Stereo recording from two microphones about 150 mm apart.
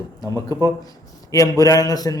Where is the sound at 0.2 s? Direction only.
25° left (ahead or behind).